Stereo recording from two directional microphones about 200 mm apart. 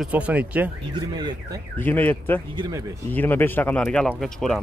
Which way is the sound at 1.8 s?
10° left (ahead or behind).